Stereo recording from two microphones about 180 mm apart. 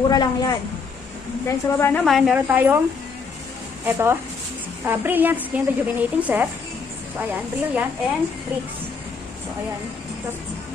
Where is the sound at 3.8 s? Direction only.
15° right (ahead or behind).